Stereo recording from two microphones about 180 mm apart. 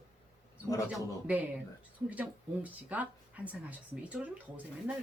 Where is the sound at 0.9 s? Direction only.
10° right (ahead or behind).